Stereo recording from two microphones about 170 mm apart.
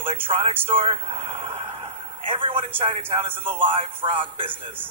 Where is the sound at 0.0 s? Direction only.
35° right (ahead or behind).